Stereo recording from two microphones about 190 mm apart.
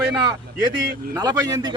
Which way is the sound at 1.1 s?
20° right (ahead or behind).